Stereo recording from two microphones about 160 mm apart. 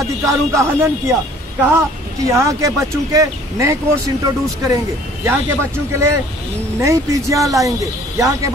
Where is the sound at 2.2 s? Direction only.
20° right (ahead or behind).